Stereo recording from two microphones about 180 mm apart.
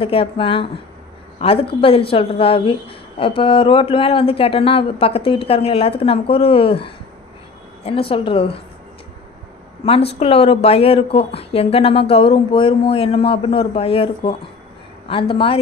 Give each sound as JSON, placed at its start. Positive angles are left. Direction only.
{"t": 0.0, "sound": "speech", "side_deg": 30}
{"t": 9.8, "sound": "speech", "side_deg": 35}